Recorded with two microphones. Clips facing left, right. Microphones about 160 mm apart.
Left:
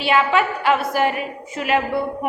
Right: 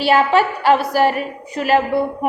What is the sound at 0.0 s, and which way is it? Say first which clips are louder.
A woman's voice: right 4 dB; 40° right (ahead or behind).